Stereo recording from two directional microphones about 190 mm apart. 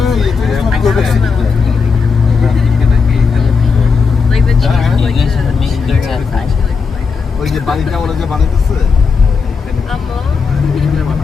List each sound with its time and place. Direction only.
0.0 s vehicle: centre (ahead or behind)
4.3 s vehicle: centre (ahead or behind)
7.4 s speech: centre (ahead or behind)